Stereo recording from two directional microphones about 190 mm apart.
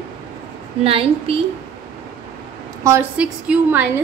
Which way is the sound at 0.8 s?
30° right (ahead or behind).